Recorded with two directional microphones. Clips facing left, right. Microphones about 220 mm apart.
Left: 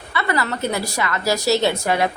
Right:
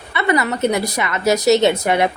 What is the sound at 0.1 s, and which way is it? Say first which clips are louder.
A woman's voice: right 4 dB; 20° right (ahead or behind).